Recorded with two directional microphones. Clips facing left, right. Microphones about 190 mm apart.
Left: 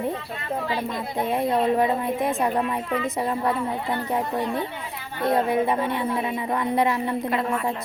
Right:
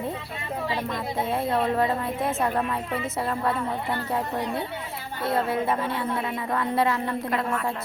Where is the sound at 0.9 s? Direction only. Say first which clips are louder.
Left 2 dB; 15° left (ahead or behind).